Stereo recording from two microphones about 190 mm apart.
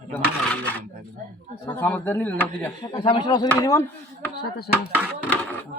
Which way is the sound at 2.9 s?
25° left (ahead or behind).